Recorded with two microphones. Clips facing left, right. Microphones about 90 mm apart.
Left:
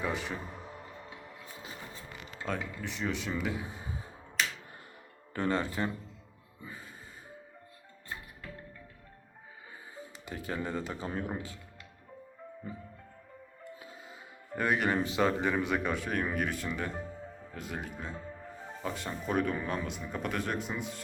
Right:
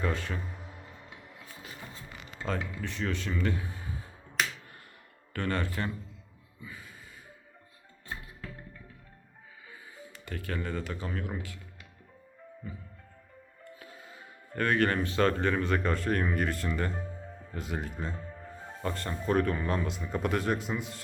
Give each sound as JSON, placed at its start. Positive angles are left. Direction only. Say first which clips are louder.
{"t": 0.0, "sound": "a man's voice", "louder": "right 1 dB", "side_deg": 15}
{"t": 2.4, "sound": "speech", "louder": "right 2 dB", "side_deg": 5}
{"t": 5.3, "sound": "speech", "louder": "left 1 dB", "side_deg": 20}
{"t": 6.6, "sound": "a sound", "louder": "even", "side_deg": 30}
{"t": 10.2, "sound": "speech", "louder": "even", "side_deg": 20}
{"t": 12.7, "sound": "music", "louder": "left 1 dB", "side_deg": 35}
{"t": 13.7, "sound": "speech", "louder": "even", "side_deg": 20}